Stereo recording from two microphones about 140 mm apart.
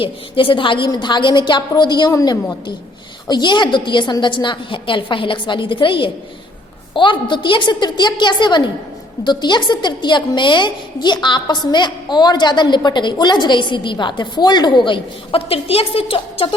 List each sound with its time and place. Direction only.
0.0 s a woman's voice: 40° left (ahead or behind)